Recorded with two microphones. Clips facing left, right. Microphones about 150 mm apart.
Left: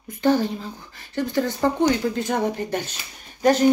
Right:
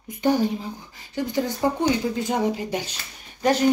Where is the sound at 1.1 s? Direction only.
15° right (ahead or behind).